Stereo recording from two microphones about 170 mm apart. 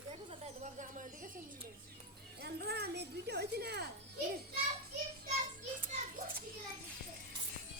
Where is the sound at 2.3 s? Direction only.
70° right (ahead or behind).